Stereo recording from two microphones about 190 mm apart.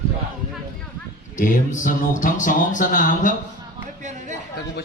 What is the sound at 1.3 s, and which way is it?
Speech, 45° left (ahead or behind).